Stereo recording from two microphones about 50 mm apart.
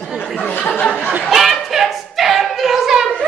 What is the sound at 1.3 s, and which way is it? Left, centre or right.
Singing, centre.